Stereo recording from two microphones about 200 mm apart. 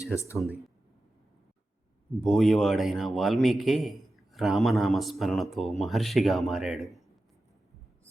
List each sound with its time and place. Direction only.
0.0 s speech: 15° left (ahead or behind)
0.3 s speech: 5° right (ahead or behind)
2.2 s a man's voice: centre (ahead or behind)